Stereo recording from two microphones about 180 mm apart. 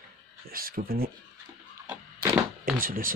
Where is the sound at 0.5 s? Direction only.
55° right (ahead or behind).